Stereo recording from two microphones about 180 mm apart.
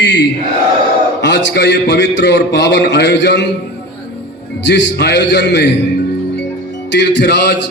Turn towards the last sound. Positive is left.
turn(degrees=70)  # may be behind; listen again after turning